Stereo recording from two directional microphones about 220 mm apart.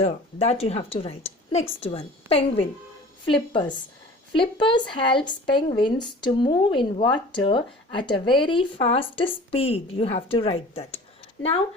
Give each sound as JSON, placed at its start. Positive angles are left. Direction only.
{"t": 0.0, "sound": "speech", "side_deg": 30}